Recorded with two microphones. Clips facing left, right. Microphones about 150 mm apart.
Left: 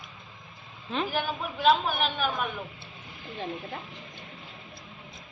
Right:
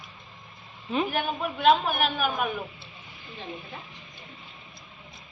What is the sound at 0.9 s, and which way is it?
A woman's voice, centre (ahead or behind).